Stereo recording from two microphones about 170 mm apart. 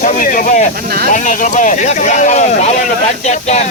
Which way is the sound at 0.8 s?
65° right (ahead or behind).